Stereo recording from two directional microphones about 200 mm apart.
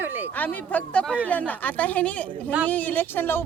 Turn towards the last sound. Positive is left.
turn(degrees=10)  # may be behind; listen again after turning